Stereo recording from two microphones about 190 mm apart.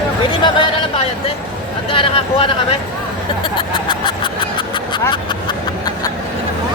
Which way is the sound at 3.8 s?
25° left (ahead or behind).